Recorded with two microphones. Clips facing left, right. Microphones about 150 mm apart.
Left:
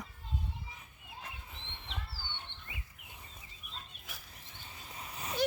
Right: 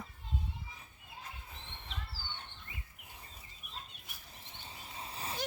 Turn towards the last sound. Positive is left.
turn(degrees=-30)  # may be behind; listen again after turning